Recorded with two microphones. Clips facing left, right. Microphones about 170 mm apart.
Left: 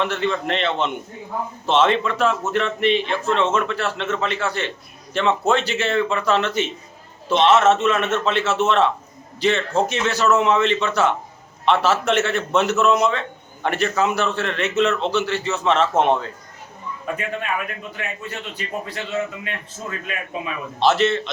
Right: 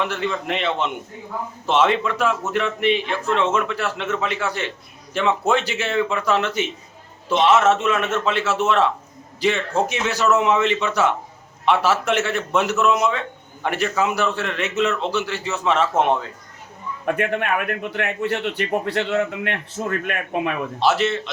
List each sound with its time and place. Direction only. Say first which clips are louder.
0.0 s a man's voice: left 2 dB; 10° right (ahead or behind)
17.1 s a man's voice: right 5 dB; 65° right (ahead or behind)
20.7 s a man's voice: left 3 dB; 10° right (ahead or behind)